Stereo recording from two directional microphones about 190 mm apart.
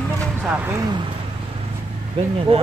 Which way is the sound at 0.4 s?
10° right (ahead or behind).